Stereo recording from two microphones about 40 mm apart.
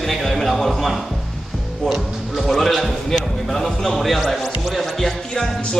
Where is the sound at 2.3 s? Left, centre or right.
Centre.